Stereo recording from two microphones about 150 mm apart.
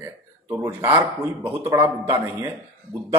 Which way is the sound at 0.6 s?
15° right (ahead or behind).